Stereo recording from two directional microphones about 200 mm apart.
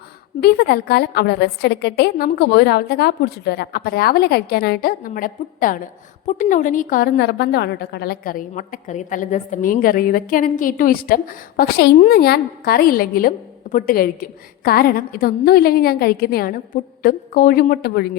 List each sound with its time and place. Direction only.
0.4 s a woman's voice: 50° left (ahead or behind)